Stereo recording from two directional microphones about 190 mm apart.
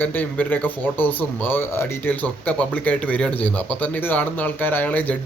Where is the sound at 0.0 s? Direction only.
10° left (ahead or behind).